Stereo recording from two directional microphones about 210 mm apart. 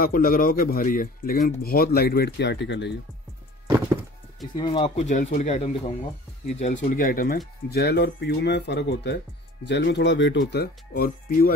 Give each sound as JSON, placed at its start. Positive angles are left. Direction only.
{"t": 0.0, "sound": "speech", "side_deg": 45}
{"t": 4.6, "sound": "speech", "side_deg": 25}